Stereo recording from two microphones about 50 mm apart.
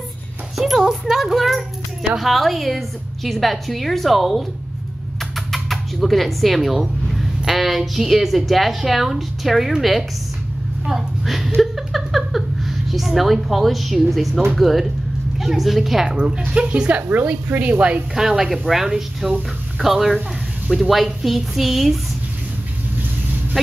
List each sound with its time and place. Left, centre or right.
0.6 s a child's voice: centre
5.5 s speech: centre
11.6 s a sound: centre
14.5 s a woman's voice: centre
16.2 s speech: centre
17.1 s speech: right
18.1 s speech: centre